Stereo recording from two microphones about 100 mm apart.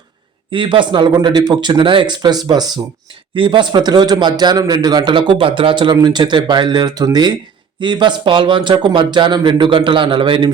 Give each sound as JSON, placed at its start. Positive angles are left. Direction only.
{"t": 0.5, "sound": "a man's voice", "side_deg": -60}
{"t": 3.3, "sound": "a man's voice", "side_deg": -55}